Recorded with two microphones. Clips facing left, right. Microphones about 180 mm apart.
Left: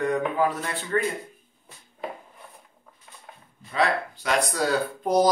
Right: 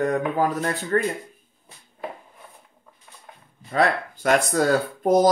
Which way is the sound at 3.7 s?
50° right (ahead or behind).